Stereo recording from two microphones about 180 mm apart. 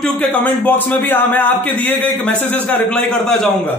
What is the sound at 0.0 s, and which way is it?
Speech, 5° left (ahead or behind).